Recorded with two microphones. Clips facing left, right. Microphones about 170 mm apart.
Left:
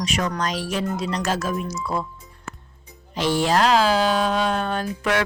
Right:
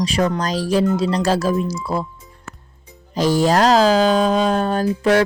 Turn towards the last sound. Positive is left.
turn(degrees=-35)  # may be behind; listen again after turning